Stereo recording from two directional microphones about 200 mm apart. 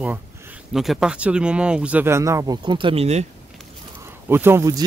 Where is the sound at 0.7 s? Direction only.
Centre (ahead or behind); by 3.3 s 30° right (ahead or behind).